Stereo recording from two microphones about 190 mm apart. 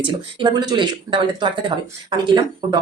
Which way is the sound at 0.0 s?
25° right (ahead or behind).